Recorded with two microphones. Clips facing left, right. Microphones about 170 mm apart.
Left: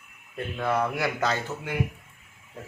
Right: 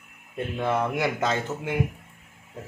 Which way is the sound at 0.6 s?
20° right (ahead or behind).